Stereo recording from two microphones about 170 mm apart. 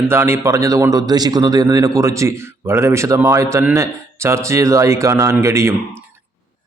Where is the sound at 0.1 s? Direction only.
15° right (ahead or behind).